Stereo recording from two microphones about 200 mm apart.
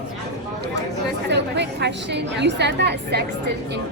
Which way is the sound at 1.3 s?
60° right (ahead or behind).